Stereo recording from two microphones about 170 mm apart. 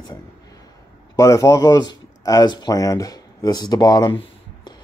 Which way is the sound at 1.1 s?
20° left (ahead or behind).